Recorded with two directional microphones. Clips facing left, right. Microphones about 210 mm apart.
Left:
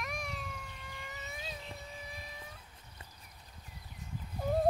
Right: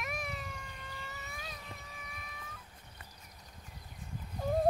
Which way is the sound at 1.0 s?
20° left (ahead or behind).